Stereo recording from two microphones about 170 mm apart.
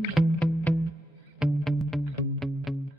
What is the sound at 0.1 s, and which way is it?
Music, 10° left (ahead or behind).